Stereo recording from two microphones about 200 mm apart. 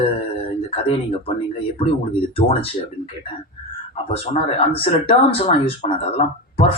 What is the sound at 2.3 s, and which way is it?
Speech, 30° left (ahead or behind).